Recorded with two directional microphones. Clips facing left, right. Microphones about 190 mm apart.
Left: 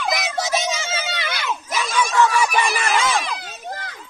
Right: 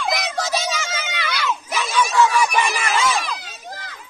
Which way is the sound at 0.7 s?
30° left (ahead or behind).